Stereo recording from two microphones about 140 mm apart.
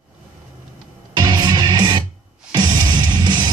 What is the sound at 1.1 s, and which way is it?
Music, 30° right (ahead or behind).